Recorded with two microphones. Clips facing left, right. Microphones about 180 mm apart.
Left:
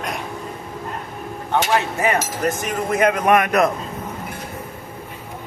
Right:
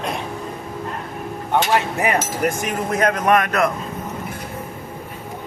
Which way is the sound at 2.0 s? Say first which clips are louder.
Even; 15° right (ahead or behind).